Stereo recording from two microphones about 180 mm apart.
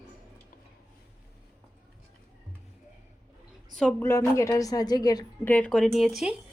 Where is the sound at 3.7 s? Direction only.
5° left (ahead or behind); by 5.2 s 20° left (ahead or behind).